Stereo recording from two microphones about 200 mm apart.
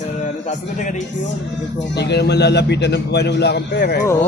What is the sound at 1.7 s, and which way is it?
A man's voice, 55° left (ahead or behind).